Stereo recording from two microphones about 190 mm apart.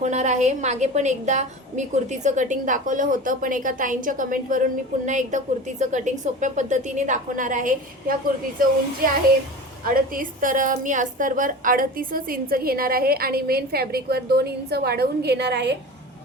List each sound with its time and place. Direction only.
0.0 s a woman's voice: 35° right (ahead or behind)
9.8 s a woman's voice: 50° right (ahead or behind); by 15.8 s 65° right (ahead or behind)